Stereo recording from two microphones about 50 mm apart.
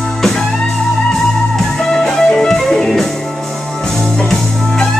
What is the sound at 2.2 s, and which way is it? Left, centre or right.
Music, centre.